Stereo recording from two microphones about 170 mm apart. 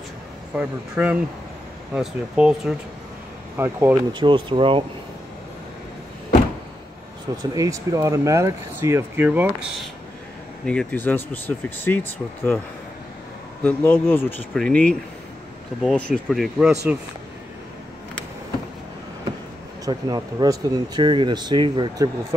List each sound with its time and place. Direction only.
0.6 s speech: 5° right (ahead or behind)
4.1 s speech: 30° right (ahead or behind)
7.5 s speech: 20° right (ahead or behind)
10.6 s speech: 5° left (ahead or behind)
13.7 s speech: 10° left (ahead or behind)
19.8 s speech: 20° right (ahead or behind)